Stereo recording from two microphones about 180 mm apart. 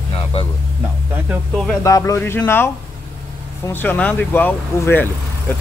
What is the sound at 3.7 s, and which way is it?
Speech, 10° left (ahead or behind).